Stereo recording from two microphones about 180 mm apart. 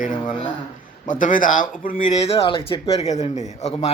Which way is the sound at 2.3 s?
30° left (ahead or behind).